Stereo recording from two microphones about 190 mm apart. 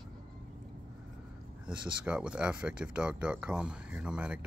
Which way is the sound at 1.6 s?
5° right (ahead or behind).